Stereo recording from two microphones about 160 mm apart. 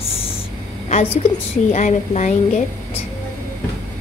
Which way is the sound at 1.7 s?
50° left (ahead or behind).